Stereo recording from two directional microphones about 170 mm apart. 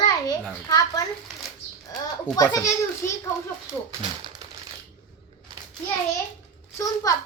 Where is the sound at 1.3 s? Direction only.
Centre (ahead or behind).